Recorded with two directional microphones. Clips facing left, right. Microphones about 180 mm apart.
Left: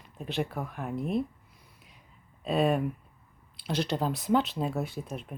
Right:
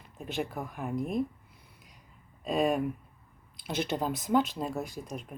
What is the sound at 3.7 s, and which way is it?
Speech, 55° right (ahead or behind).